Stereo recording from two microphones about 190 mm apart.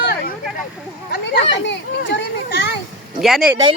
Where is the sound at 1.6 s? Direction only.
65° left (ahead or behind).